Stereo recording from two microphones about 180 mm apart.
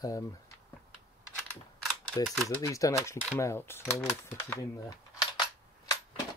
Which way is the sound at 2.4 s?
15° left (ahead or behind).